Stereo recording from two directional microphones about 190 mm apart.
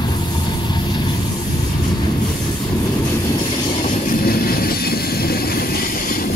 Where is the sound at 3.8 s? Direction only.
40° left (ahead or behind).